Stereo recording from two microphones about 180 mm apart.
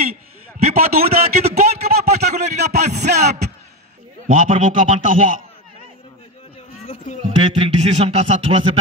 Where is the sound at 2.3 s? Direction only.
65° right (ahead or behind).